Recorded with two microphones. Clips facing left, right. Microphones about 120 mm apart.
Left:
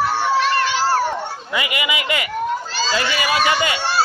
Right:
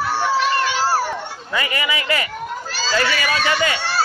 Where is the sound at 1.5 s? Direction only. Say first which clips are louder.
Even; 15° left (ahead or behind).